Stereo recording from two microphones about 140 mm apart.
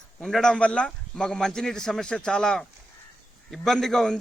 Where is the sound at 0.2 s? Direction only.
5° left (ahead or behind).